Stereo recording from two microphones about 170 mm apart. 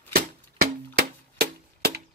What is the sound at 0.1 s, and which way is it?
Music, 65° right (ahead or behind).